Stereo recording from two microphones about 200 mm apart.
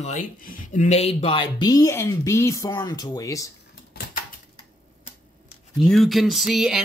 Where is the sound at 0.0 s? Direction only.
40° left (ahead or behind); by 3.5 s 15° left (ahead or behind).